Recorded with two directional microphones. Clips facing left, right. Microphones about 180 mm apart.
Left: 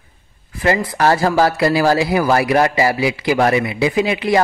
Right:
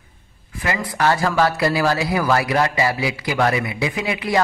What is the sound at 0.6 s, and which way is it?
Speech, 35° left (ahead or behind).